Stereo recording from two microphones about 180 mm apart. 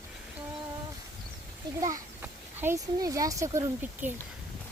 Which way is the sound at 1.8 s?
15° right (ahead or behind).